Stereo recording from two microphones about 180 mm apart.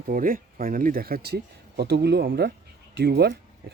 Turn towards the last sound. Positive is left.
turn(degrees=-65)  # may be behind; listen again after turning